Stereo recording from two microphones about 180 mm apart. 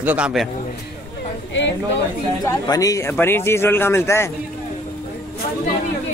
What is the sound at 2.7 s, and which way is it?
Speech, 20° left (ahead or behind).